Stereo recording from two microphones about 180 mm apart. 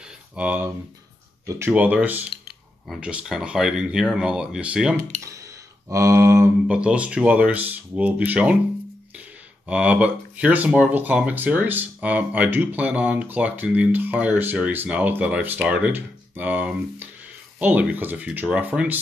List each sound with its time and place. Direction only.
0.4 s speech: 5° right (ahead or behind)
5.9 s speech: 20° right (ahead or behind)
9.7 s speech: 5° right (ahead or behind)